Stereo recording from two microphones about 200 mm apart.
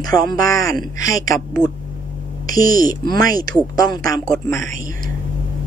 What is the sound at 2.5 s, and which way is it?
Speech, 45° right (ahead or behind).